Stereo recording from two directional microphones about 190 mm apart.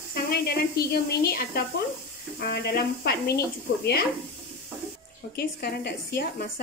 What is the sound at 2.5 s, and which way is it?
Speech, 55° left (ahead or behind).